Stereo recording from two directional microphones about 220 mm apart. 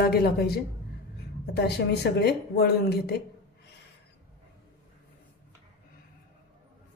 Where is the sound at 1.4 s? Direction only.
50° left (ahead or behind).